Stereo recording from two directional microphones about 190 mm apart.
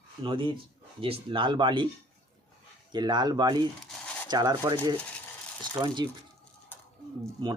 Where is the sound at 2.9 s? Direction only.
20° right (ahead or behind).